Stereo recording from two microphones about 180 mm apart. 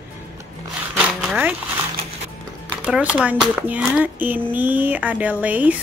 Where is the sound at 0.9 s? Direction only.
5° right (ahead or behind).